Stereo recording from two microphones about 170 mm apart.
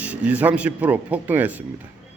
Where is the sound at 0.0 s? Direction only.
10° right (ahead or behind).